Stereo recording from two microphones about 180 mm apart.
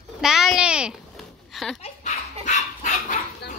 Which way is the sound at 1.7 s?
40° left (ahead or behind).